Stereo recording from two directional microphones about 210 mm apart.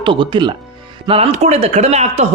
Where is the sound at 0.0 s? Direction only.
25° right (ahead or behind).